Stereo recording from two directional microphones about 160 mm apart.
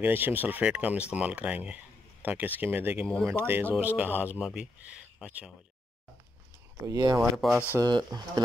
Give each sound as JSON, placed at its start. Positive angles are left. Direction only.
{"t": 0.0, "sound": "speech", "side_deg": -10}
{"t": 6.9, "sound": "speech", "side_deg": -25}
{"t": 7.2, "sound": "speech", "side_deg": 0}
{"t": 7.8, "sound": "speech", "side_deg": -25}